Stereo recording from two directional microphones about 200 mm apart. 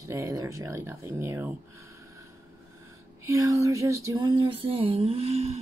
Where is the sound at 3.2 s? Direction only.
15° right (ahead or behind); by 5.5 s 30° right (ahead or behind).